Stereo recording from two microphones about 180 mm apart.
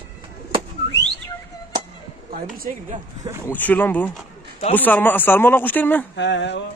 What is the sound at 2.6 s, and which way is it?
Speech, 45° right (ahead or behind).